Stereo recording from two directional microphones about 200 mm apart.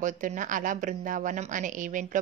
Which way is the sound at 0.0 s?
40° right (ahead or behind).